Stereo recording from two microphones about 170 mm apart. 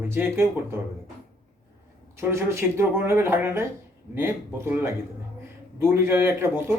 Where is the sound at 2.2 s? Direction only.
15° right (ahead or behind).